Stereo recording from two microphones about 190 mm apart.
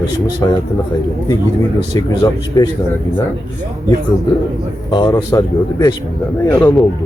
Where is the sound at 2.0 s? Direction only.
15° left (ahead or behind).